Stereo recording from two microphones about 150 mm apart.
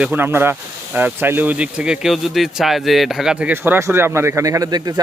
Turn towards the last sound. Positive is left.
turn(degrees=-25)  # may be behind; listen again after turning